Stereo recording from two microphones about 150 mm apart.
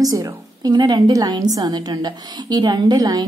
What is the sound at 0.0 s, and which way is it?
A woman's voice, 25° right (ahead or behind).